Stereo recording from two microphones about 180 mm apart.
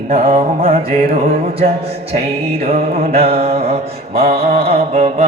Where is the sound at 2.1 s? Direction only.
35° right (ahead or behind).